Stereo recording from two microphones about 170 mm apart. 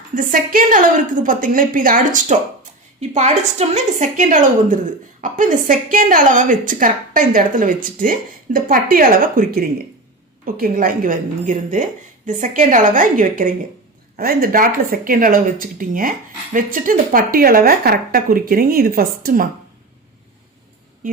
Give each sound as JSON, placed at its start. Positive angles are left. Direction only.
{"t": 0.1, "sound": "speech", "side_deg": -50}
{"t": 21.0, "sound": "music", "side_deg": -55}